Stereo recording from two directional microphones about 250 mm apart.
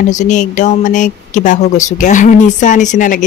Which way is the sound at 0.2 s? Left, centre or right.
Left.